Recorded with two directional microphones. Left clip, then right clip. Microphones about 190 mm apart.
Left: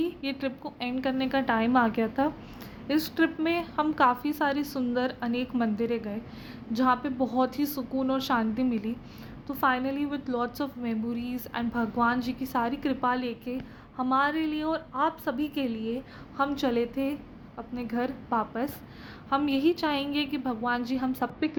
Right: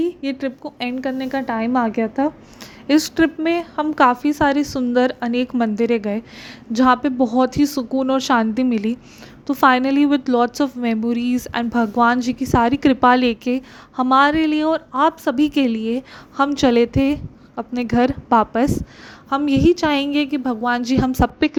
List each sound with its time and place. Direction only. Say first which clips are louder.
0.0 s a woman's voice: right 8 dB; 35° right (ahead or behind)
2.8 s a woman's voice: right 10 dB; 45° right (ahead or behind)